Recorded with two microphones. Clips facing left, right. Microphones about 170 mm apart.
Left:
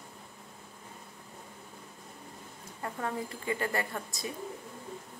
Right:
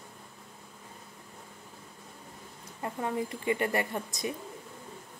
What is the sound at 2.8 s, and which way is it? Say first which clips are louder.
Speech: right 3 dB; 15° right (ahead or behind).